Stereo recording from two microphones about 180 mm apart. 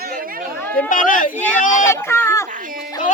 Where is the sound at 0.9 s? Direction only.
50° left (ahead or behind).